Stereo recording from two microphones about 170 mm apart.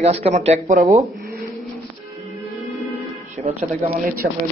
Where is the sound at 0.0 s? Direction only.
40° right (ahead or behind).